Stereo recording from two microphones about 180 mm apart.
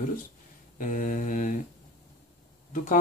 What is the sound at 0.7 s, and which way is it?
Speech, 45° left (ahead or behind).